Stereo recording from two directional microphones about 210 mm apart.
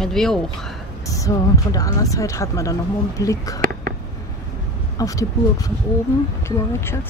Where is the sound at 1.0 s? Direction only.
15° left (ahead or behind).